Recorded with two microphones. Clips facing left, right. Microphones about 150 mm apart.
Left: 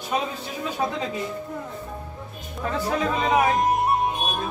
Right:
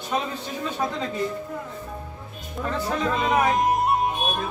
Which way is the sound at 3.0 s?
Centre (ahead or behind).